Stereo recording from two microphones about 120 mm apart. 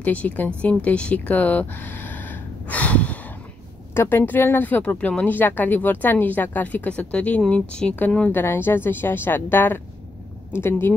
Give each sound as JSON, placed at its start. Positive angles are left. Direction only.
{"t": 0.0, "sound": "speech", "side_deg": 15}